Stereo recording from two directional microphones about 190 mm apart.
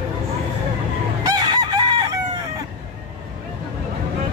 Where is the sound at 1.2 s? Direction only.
20° right (ahead or behind).